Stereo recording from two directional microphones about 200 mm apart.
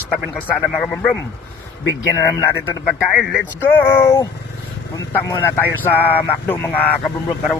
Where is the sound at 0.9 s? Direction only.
5° left (ahead or behind).